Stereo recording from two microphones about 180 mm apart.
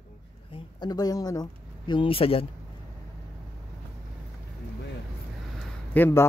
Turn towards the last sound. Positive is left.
turn(degrees=15)  # may be behind; listen again after turning